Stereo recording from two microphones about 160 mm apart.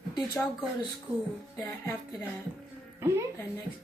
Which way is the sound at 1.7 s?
15° left (ahead or behind).